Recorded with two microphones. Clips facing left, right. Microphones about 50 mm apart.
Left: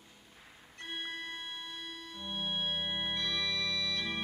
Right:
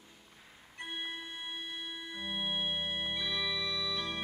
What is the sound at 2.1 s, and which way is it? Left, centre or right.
Organ, centre.